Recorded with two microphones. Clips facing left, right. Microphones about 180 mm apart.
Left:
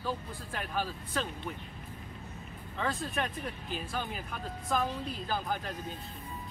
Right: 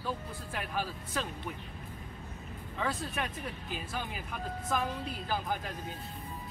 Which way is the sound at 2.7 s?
5° right (ahead or behind).